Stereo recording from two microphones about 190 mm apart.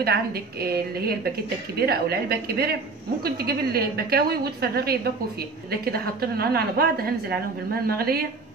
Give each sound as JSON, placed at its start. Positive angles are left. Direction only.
{"t": 0.0, "sound": "a woman's voice", "side_deg": -55}